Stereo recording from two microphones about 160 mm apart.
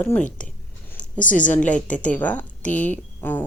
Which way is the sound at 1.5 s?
10° left (ahead or behind).